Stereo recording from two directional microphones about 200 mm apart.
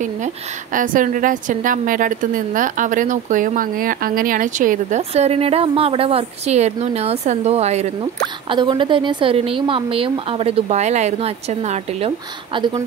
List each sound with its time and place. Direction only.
0.7 s a woman's voice: 40° right (ahead or behind)
12.5 s a woman's voice: 25° right (ahead or behind)